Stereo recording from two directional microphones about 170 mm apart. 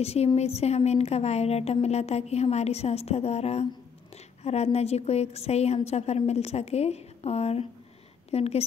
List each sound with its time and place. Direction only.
0.0 s a woman's voice: 35° left (ahead or behind)